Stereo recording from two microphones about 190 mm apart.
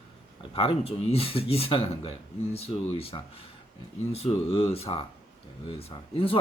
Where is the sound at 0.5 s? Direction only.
30° left (ahead or behind).